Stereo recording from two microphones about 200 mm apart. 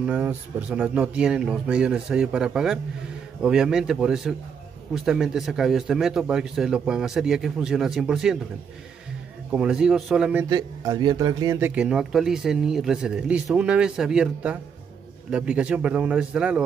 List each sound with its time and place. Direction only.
0.0 s speech: 5° right (ahead or behind)
9.5 s speech: 5° right (ahead or behind)
10.5 s speech: 20° right (ahead or behind)
11.7 s speech: 5° right (ahead or behind)